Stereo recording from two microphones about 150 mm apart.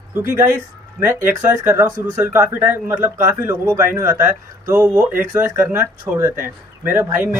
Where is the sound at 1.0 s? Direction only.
15° right (ahead or behind).